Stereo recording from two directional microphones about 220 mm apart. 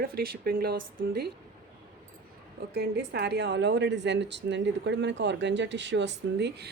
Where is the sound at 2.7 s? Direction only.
50° right (ahead or behind).